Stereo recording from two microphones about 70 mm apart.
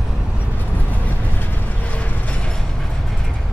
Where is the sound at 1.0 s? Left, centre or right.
Left.